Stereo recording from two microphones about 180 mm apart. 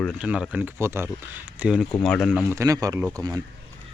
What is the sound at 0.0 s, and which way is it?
Speech, 5° right (ahead or behind).